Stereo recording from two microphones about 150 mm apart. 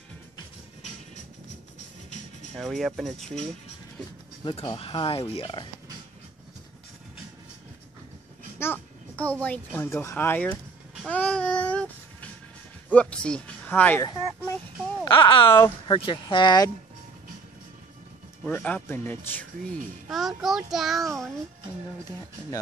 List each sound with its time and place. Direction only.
2.5 s a child's voice: centre (ahead or behind)
4.5 s speech: 35° left (ahead or behind)
8.5 s a child's voice: 15° left (ahead or behind)
11.1 s babbling: 10° left (ahead or behind)
12.9 s speech: 5° left (ahead or behind)
15.0 s speech: 35° left (ahead or behind)
18.4 s speech: 10° left (ahead or behind)
20.1 s a child's voice: centre (ahead or behind)